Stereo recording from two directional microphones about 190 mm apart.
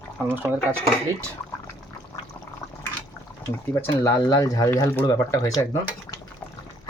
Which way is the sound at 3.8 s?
15° left (ahead or behind).